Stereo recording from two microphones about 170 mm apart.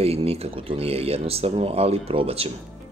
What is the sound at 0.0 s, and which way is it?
Speech, 35° right (ahead or behind).